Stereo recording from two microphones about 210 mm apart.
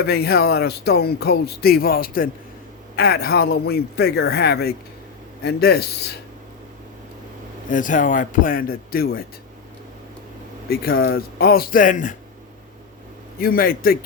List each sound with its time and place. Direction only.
0.0 s speech: 50° left (ahead or behind)
7.7 s speech: 40° left (ahead or behind)
10.7 s speech: 45° left (ahead or behind)
13.4 s speech: 45° left (ahead or behind)